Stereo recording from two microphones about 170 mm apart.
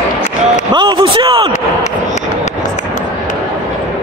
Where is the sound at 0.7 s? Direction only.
25° right (ahead or behind).